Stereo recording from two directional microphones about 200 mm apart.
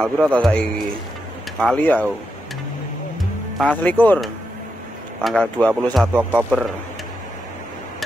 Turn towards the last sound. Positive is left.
turn(degrees=-5)  # may be behind; listen again after turning